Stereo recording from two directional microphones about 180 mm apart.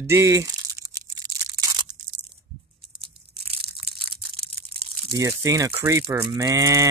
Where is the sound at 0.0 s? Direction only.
15° right (ahead or behind).